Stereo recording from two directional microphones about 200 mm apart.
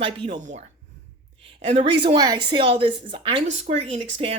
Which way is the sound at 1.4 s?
30° right (ahead or behind).